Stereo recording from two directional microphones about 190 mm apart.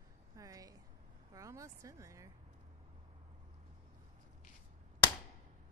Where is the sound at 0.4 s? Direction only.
20° right (ahead or behind).